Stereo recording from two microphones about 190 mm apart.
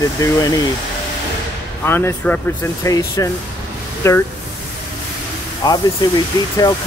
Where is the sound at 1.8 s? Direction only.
10° left (ahead or behind).